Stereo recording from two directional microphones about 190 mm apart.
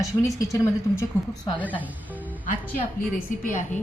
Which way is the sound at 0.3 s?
15° left (ahead or behind).